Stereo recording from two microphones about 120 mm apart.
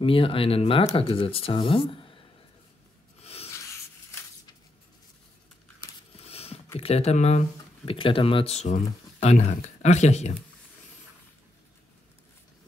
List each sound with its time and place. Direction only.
0.0 s speech: 50° left (ahead or behind)
3.2 s rub: 55° left (ahead or behind)
6.1 s a sound: 55° left (ahead or behind)
6.8 s speech: 60° left (ahead or behind)
7.8 s speech: 50° left (ahead or behind); by 10.3 s 70° left (ahead or behind)